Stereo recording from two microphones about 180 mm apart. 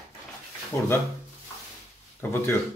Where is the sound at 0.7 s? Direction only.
15° left (ahead or behind).